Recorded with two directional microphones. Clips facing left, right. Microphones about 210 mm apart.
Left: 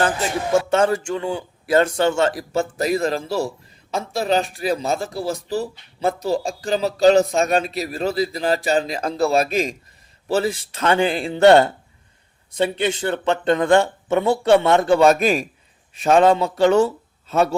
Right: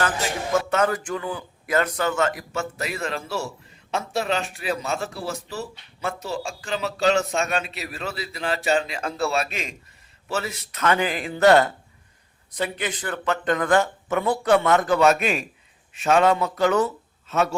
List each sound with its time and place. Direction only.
0.5 s a man's voice: 30° left (ahead or behind)